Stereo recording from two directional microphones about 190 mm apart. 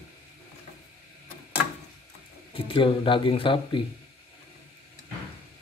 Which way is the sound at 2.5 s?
30° left (ahead or behind).